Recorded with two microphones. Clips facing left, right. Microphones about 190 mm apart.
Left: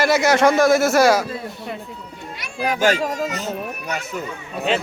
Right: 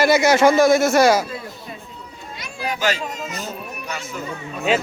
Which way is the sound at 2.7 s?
50° left (ahead or behind).